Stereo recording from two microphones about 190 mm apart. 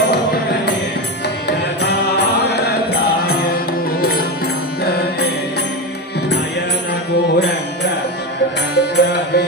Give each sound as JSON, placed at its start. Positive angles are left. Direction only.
{"t": 1.8, "sound": "music", "side_deg": 60}
{"t": 7.1, "sound": "music", "side_deg": 65}